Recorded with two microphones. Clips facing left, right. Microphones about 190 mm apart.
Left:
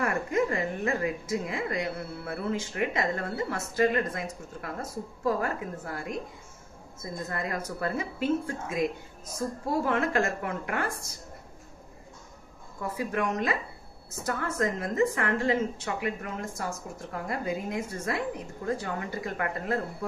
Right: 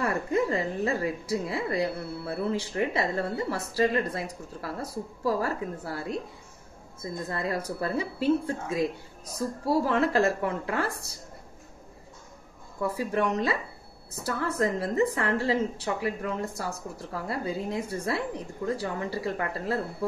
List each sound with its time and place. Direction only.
0.0 s a woman's voice: 30° right (ahead or behind)
12.9 s a woman's voice: 30° right (ahead or behind)